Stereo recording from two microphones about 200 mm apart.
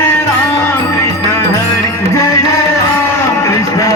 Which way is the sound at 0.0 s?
10° left (ahead or behind).